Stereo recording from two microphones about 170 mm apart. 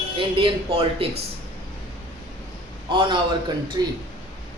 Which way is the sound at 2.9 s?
30° right (ahead or behind).